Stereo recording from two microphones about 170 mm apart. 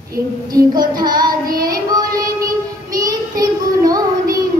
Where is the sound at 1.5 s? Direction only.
60° right (ahead or behind).